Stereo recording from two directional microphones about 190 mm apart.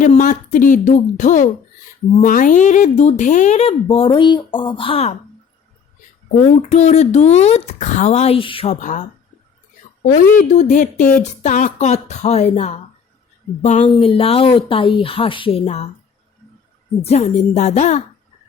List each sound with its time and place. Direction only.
0.0 s speech: 40° left (ahead or behind)
6.6 s speech: 35° left (ahead or behind)
10.3 s speech: 40° left (ahead or behind)
17.0 s speech: 35° left (ahead or behind)